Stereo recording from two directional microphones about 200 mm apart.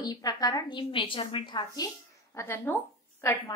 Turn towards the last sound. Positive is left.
turn(degrees=15)  # may be behind; listen again after turning